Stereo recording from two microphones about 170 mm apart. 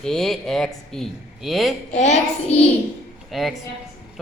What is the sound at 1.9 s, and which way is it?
Speech, 40° left (ahead or behind).